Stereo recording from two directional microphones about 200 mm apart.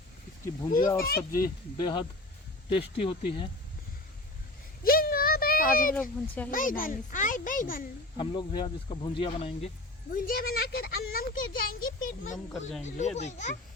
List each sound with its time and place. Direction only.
0.9 s a child's voice: 45° left (ahead or behind)
1.8 s speech: 25° left (ahead or behind)
4.8 s a sound: 50° left (ahead or behind)
6.0 s a child's voice: 5° left (ahead or behind)
6.5 s a child's voice: 45° left (ahead or behind)
8.1 s speech: 25° left (ahead or behind)
10.1 s a sound: 45° left (ahead or behind)
13.1 s speech: 35° left (ahead or behind)